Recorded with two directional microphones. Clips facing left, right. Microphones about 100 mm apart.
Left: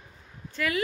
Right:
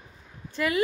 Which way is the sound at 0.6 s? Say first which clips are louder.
Right 3 dB; 25° right (ahead or behind).